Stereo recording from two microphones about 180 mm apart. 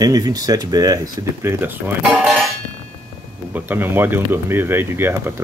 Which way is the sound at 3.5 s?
10° right (ahead or behind).